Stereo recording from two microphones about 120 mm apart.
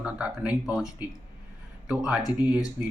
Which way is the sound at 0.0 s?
10° right (ahead or behind).